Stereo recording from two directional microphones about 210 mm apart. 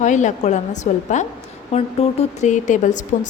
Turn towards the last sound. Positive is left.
turn(degrees=35)  # may be behind; listen again after turning